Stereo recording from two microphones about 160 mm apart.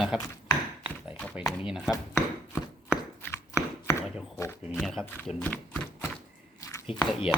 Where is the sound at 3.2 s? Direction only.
15° left (ahead or behind).